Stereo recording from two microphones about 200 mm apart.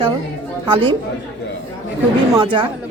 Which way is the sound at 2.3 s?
25° right (ahead or behind).